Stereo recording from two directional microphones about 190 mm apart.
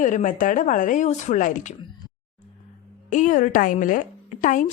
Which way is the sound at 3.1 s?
40° left (ahead or behind).